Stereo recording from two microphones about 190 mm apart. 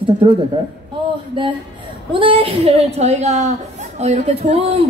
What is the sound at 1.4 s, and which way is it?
A woman's voice, 25° right (ahead or behind).